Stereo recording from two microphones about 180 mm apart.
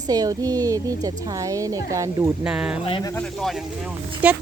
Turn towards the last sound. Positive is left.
turn(degrees=-5)  # may be behind; listen again after turning